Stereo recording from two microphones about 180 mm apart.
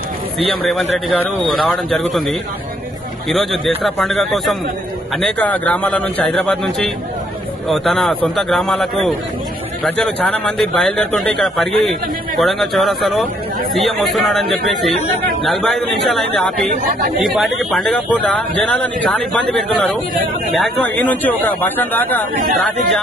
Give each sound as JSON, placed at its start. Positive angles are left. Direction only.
{"t": 0.5, "sound": "a man's voice", "side_deg": 0}
{"t": 3.3, "sound": "a man's voice", "side_deg": 0}
{"t": 15.4, "sound": "a man's voice", "side_deg": 0}
{"t": 22.4, "sound": "speech", "side_deg": -45}